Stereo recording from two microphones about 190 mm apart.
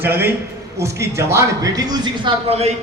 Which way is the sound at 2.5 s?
35° right (ahead or behind).